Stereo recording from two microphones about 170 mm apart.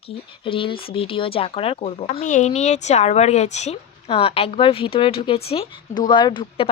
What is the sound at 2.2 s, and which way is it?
A woman's voice, 45° left (ahead or behind).